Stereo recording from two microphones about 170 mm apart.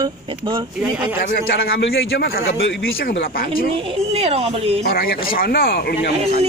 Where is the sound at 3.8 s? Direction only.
35° right (ahead or behind).